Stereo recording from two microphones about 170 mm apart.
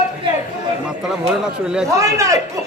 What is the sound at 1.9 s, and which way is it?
Speech, 20° right (ahead or behind).